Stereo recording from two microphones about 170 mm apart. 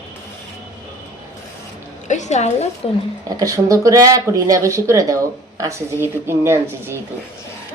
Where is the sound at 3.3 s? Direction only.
20° right (ahead or behind).